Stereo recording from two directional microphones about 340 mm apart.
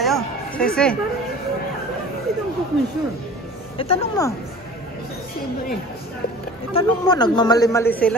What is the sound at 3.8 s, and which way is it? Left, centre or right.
Speech, centre.